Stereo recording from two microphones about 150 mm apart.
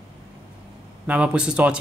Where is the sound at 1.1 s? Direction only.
5° right (ahead or behind).